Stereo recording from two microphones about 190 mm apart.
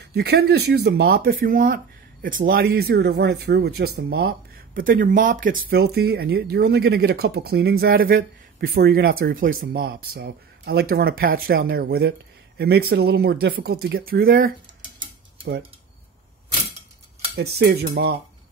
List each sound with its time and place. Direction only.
0.1 s speech: 55° right (ahead or behind)
17.4 s speech: 55° right (ahead or behind)